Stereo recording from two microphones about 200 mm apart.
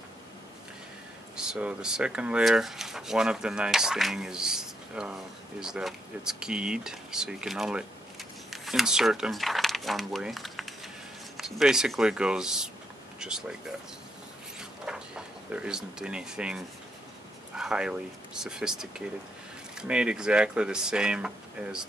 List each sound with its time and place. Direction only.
1.3 s speech: 5° right (ahead or behind)
14.6 s a sound: 5° right (ahead or behind)
17.6 s speech: 5° right (ahead or behind)